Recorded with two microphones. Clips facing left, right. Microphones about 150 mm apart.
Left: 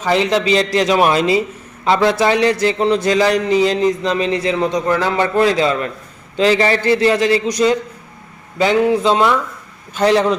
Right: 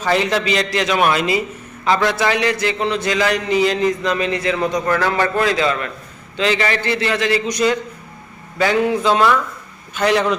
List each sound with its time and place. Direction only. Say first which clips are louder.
0.0 s a man's voice: left 2 dB; 20° left (ahead or behind)
5.5 s a man's voice: left 3 dB; 30° left (ahead or behind)